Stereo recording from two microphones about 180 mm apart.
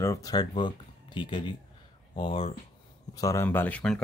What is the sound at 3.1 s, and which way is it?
Speech, 20° left (ahead or behind).